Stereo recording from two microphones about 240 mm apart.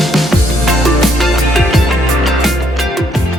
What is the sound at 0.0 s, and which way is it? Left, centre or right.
Music, centre.